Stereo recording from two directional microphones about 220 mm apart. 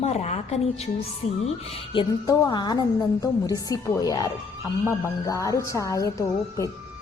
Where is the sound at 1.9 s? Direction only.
20° left (ahead or behind).